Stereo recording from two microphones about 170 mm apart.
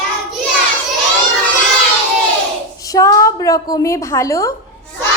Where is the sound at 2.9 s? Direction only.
20° left (ahead or behind).